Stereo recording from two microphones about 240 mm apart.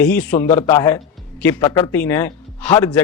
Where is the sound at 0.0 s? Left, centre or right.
Centre.